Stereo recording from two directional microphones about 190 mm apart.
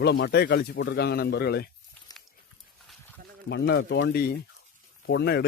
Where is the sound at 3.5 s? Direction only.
60° left (ahead or behind).